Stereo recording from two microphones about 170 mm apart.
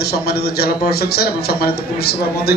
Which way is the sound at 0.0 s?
65° left (ahead or behind).